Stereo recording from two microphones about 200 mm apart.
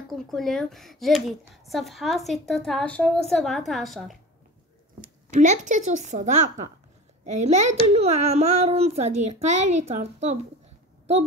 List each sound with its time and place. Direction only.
0.1 s a woman's voice: centre (ahead or behind)
5.0 s a child's voice: 40° right (ahead or behind)